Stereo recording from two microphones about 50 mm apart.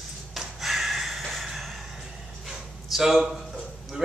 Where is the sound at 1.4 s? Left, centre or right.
Centre.